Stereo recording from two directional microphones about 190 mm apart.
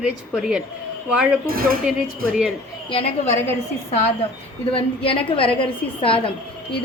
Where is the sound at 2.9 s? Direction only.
30° left (ahead or behind).